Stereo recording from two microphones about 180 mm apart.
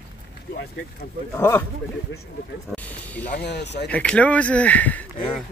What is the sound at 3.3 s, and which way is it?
Speech, 65° left (ahead or behind).